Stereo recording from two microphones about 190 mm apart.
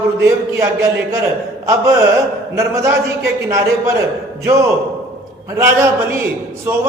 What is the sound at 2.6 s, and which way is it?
Speech, 15° right (ahead or behind).